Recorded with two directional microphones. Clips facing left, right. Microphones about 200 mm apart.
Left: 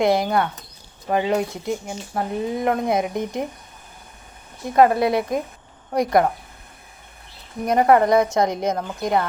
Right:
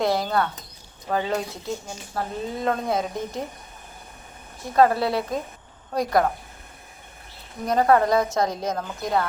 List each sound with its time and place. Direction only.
0.0 s a woman's voice: 20° left (ahead or behind)
4.7 s a woman's voice: 15° left (ahead or behind)
7.7 s a woman's voice: 20° left (ahead or behind)